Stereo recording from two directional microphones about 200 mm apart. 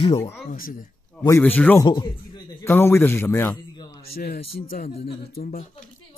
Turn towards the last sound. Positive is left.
turn(degrees=45)  # may be behind; listen again after turning